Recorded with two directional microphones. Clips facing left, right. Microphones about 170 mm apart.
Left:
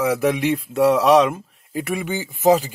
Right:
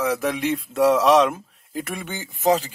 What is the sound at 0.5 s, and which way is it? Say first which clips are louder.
Speech: left 1 dB; centre (ahead or behind).